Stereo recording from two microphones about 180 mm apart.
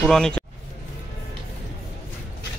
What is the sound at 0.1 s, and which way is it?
Speech, 5° left (ahead or behind).